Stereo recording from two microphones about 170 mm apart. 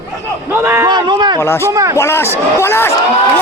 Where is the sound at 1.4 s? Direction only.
15° left (ahead or behind).